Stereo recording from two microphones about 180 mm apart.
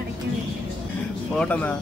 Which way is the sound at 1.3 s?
10° left (ahead or behind).